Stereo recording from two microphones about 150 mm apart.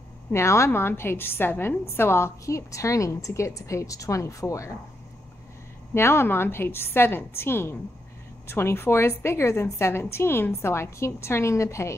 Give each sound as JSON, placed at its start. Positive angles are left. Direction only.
{"t": 0.3, "sound": "a woman's voice", "side_deg": 20}
{"t": 5.9, "sound": "a woman's voice", "side_deg": 15}